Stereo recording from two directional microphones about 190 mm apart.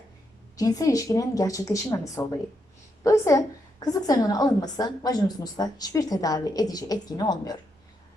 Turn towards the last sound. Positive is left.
turn(degrees=20)  # may be behind; listen again after turning